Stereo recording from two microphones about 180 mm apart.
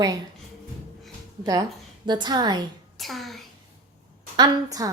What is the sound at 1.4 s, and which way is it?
A woman's voice, 25° right (ahead or behind).